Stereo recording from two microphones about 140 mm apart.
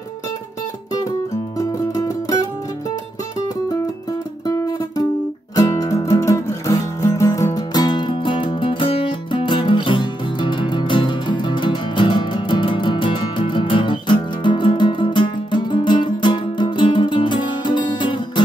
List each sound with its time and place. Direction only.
1.6 s music: 25° left (ahead or behind)
5.6 s music: 25° left (ahead or behind)